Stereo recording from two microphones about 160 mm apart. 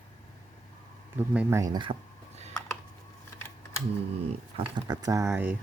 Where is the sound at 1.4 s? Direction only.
15° right (ahead or behind).